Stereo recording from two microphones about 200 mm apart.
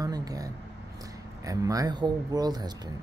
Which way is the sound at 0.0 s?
20° right (ahead or behind).